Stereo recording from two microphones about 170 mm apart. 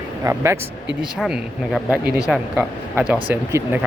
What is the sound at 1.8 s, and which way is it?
Speech, 20° left (ahead or behind).